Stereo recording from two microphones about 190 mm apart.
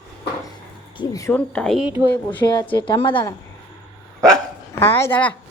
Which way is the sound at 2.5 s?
25° left (ahead or behind).